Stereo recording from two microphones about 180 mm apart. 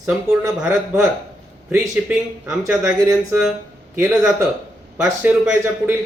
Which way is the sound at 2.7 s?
15° right (ahead or behind).